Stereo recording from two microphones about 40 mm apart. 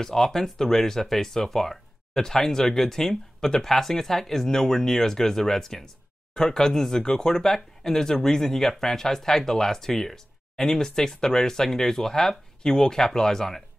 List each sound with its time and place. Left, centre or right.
0.0 s speech: centre